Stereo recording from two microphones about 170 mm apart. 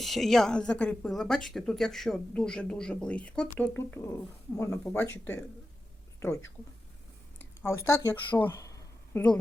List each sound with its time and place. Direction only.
0.0 s speech: centre (ahead or behind)
7.6 s speech: 15° left (ahead or behind)